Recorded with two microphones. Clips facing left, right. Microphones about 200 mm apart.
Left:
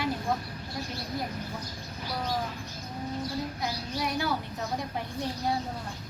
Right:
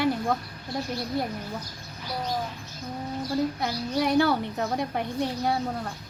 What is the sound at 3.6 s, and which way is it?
A woman's voice, 65° right (ahead or behind).